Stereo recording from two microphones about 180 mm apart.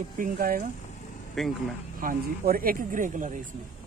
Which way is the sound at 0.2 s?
50° right (ahead or behind).